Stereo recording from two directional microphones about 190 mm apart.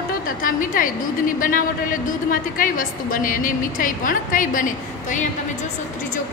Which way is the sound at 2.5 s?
45° left (ahead or behind).